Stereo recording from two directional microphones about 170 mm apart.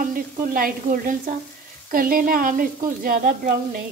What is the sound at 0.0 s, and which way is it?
Speech, 55° right (ahead or behind).